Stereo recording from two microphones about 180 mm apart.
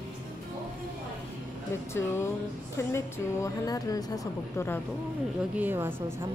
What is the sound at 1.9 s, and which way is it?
A woman's voice, 15° left (ahead or behind).